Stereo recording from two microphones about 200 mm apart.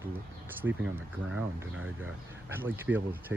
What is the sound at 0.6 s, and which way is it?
Speech, 65° right (ahead or behind).